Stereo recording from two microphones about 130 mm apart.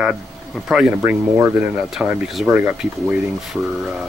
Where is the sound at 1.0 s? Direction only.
20° right (ahead or behind).